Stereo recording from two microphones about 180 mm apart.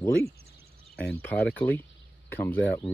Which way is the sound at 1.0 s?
10° left (ahead or behind).